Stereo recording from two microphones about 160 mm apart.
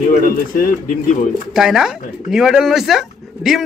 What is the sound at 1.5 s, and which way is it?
A man's voice, centre (ahead or behind).